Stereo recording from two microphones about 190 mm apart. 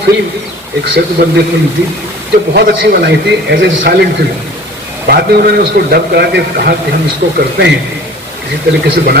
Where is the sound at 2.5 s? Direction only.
55° right (ahead or behind).